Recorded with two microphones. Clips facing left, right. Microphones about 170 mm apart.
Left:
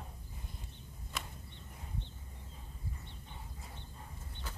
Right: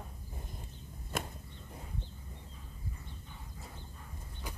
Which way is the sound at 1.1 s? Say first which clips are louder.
Right 7 dB; 50° right (ahead or behind).